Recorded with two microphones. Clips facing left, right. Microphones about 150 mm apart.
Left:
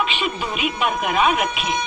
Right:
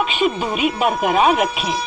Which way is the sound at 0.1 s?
40° right (ahead or behind).